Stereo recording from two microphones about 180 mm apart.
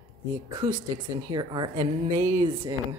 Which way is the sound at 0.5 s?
20° right (ahead or behind).